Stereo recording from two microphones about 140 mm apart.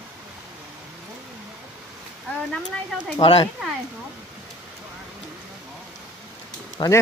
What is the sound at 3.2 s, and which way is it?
Speech, 45° left (ahead or behind).